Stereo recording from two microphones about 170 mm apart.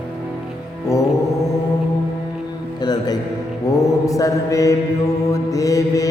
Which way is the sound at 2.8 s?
25° left (ahead or behind).